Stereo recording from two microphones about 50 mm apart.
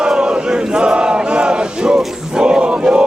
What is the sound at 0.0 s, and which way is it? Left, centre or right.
Chant, centre.